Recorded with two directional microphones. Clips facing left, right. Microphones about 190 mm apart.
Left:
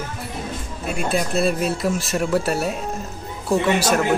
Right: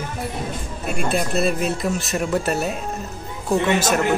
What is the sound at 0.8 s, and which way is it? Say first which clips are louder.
Speech: even; centre (ahead or behind).